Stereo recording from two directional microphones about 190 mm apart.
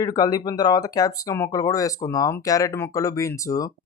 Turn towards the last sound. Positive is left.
turn(degrees=15)  # may be behind; listen again after turning